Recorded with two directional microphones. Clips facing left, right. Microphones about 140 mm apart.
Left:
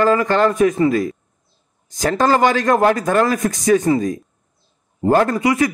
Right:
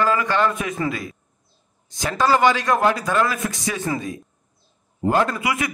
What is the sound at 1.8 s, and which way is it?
A man's voice, 45° left (ahead or behind).